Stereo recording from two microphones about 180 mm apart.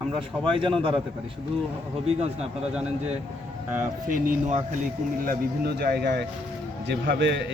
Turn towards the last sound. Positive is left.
turn(degrees=-70)  # may be behind; listen again after turning